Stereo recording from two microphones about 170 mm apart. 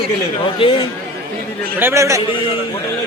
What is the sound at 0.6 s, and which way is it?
Speech, 30° left (ahead or behind).